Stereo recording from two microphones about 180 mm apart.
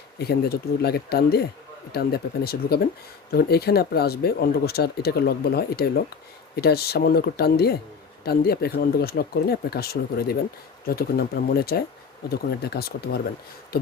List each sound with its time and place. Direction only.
0.2 s speech: 60° left (ahead or behind)